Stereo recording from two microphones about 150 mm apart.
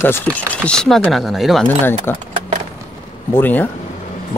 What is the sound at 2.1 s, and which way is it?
Speech, 15° left (ahead or behind).